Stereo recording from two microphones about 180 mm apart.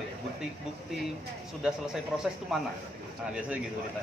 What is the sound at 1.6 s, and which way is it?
Speech, 5° right (ahead or behind).